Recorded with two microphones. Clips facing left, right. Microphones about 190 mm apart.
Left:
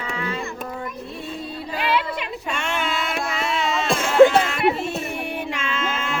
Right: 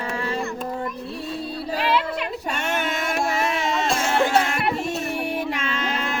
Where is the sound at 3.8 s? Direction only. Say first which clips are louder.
Left 11 dB; 55° left (ahead or behind).